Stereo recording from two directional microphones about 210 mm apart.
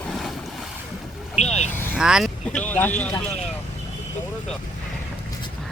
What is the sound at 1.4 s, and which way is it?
Speech, 30° left (ahead or behind).